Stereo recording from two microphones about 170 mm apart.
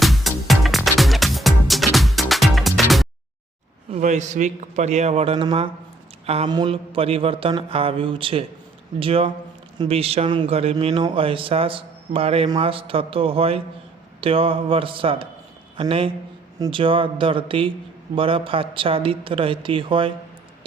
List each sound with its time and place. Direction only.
0.0 s music: centre (ahead or behind)
3.9 s a man's voice: 45° right (ahead or behind)